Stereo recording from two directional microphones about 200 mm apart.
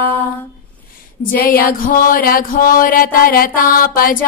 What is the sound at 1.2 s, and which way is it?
Music, 45° left (ahead or behind).